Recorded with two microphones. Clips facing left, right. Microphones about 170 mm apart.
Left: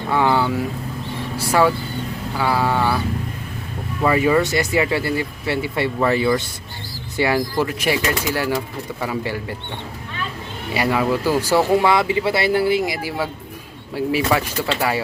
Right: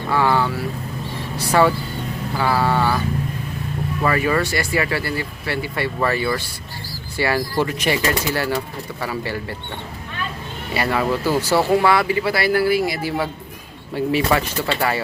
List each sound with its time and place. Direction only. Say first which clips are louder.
0.1 s speech: left 1 dB; 15° left (ahead or behind)
2.4 s a sound: even; 10° left (ahead or behind)
4.0 s speech: left 3 dB; 15° left (ahead or behind)
7.5 s speech: even; 5° left (ahead or behind)
10.8 s speech: left 1 dB; 10° left (ahead or behind)